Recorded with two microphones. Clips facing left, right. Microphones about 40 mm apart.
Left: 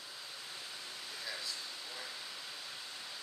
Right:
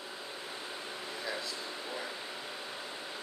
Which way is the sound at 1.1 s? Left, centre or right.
Right.